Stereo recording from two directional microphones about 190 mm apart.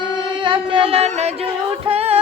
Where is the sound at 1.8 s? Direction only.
30° right (ahead or behind).